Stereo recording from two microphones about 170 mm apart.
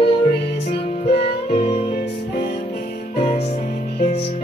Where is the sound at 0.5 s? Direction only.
35° left (ahead or behind).